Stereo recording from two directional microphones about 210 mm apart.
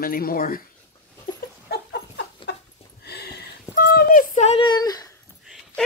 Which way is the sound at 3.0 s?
50° left (ahead or behind).